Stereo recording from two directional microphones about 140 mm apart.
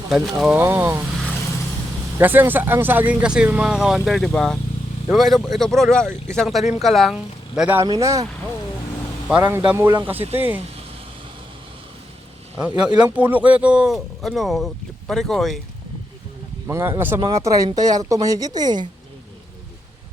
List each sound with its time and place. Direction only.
0.1 s speech: centre (ahead or behind)
0.5 s speech: 15° right (ahead or behind)
2.1 s speech: 15° right (ahead or behind)
7.9 s speech: 25° right (ahead or behind)
9.4 s speech: 25° right (ahead or behind)
12.5 s speech: 10° right (ahead or behind)
16.6 s speech: 20° right (ahead or behind)